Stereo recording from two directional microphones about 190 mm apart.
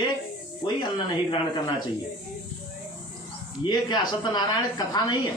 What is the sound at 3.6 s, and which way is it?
Speech, 20° left (ahead or behind).